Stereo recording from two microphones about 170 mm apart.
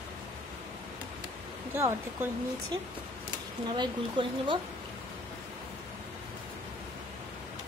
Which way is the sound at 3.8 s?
30° right (ahead or behind).